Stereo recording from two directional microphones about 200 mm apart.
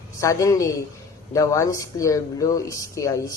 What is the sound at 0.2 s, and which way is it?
Speech, 15° left (ahead or behind).